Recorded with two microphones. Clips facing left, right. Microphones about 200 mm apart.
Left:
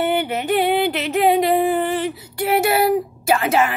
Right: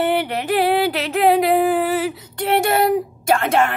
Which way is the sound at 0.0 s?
Centre (ahead or behind).